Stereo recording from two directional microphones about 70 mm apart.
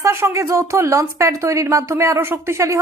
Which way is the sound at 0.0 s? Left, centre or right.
Right.